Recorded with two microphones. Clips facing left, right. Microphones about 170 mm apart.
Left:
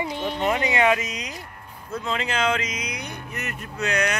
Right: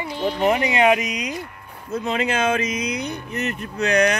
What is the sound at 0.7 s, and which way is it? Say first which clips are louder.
Speech: right 3 dB; 20° right (ahead or behind).